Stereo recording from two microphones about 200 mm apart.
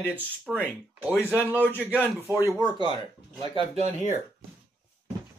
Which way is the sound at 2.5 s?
20° left (ahead or behind).